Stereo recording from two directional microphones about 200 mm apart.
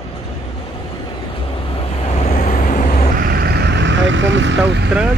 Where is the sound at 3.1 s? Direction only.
45° right (ahead or behind).